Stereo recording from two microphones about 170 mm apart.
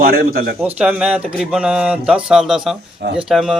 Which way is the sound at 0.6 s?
5° right (ahead or behind).